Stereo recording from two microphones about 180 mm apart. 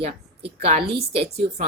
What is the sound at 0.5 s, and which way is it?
Speech, 40° right (ahead or behind).